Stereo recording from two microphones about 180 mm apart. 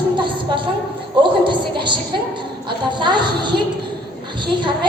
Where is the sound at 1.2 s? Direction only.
25° right (ahead or behind).